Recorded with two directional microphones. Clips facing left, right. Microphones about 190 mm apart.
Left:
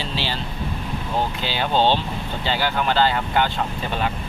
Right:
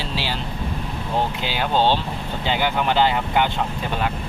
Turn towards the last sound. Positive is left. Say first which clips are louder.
# right 1 dB
turn(degrees=-15)  # may be behind; listen again after turning